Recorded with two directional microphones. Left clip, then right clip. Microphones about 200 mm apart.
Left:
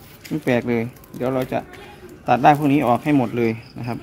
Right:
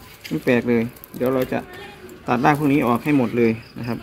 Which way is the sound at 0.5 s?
35° left (ahead or behind).